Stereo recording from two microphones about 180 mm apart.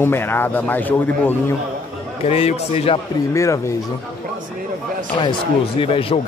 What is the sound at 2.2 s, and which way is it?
Speech, 35° left (ahead or behind).